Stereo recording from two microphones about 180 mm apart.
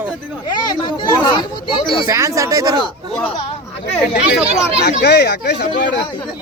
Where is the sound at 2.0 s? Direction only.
15° right (ahead or behind).